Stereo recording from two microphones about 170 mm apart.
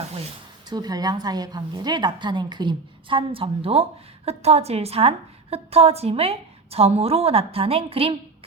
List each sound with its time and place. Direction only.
0.7 s a woman's voice: 20° right (ahead or behind)